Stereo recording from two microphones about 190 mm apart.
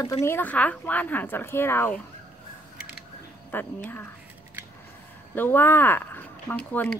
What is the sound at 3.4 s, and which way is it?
Speech, 10° left (ahead or behind).